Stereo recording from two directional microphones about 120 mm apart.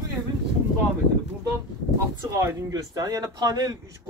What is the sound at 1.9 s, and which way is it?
Speech, 25° right (ahead or behind).